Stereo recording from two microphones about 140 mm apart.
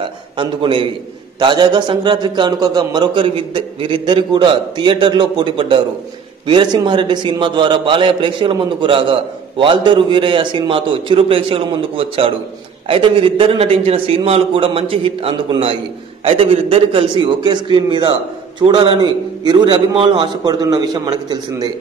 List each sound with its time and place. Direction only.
0.0 s a man's voice: 35° right (ahead or behind)